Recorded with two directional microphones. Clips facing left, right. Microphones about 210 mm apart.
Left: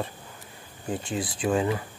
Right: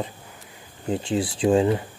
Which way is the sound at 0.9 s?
25° right (ahead or behind).